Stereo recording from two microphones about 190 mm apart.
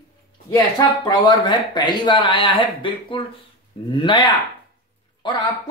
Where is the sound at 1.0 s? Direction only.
25° left (ahead or behind).